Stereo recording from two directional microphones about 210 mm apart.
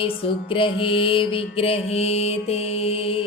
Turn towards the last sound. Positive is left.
turn(degrees=25)  # may be behind; listen again after turning